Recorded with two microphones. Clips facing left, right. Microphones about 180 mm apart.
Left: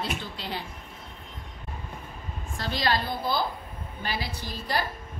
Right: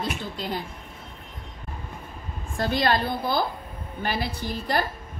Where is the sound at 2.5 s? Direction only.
50° right (ahead or behind).